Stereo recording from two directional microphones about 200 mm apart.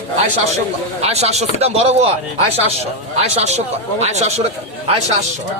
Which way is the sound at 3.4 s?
35° right (ahead or behind).